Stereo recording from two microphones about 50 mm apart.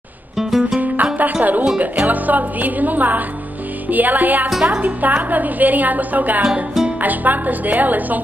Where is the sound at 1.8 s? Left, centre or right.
Right.